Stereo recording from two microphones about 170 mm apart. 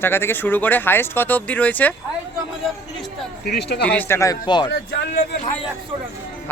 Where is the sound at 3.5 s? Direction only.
75° left (ahead or behind).